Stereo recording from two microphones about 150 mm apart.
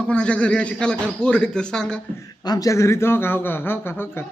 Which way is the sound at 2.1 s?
25° left (ahead or behind).